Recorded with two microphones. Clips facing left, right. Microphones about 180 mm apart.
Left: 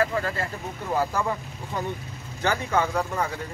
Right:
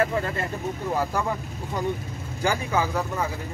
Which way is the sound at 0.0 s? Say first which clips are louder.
Right 1 dB; 25° right (ahead or behind).